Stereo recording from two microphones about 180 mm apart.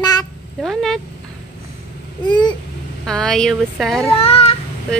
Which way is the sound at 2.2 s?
25° left (ahead or behind).